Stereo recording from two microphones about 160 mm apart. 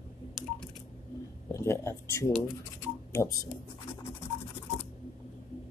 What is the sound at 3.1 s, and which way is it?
Speech, 20° left (ahead or behind).